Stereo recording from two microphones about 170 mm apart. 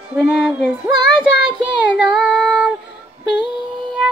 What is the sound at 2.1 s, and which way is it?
Female singing, 5° right (ahead or behind).